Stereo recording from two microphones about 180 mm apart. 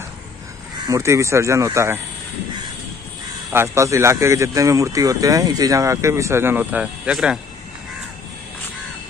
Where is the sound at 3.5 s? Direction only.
15° right (ahead or behind).